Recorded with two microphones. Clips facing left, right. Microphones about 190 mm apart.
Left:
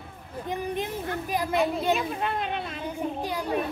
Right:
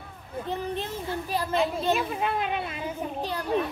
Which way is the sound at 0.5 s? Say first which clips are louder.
Left 2 dB; 15° left (ahead or behind).